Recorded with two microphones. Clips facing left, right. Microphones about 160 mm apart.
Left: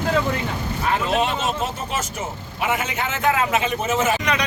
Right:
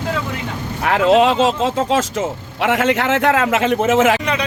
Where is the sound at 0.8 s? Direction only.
90° right.